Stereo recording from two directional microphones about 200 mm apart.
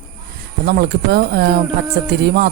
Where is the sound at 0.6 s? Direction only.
55° right (ahead or behind).